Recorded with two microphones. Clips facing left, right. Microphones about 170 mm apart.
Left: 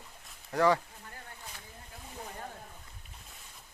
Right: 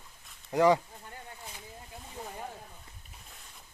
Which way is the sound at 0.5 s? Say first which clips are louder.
Right 3 dB; 20° right (ahead or behind).